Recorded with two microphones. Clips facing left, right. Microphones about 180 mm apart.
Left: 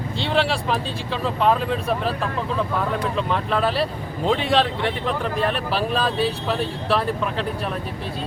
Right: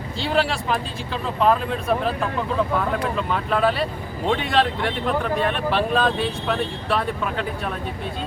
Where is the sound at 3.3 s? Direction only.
Centre (ahead or behind).